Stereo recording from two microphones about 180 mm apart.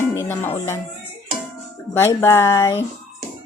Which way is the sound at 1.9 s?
15° left (ahead or behind).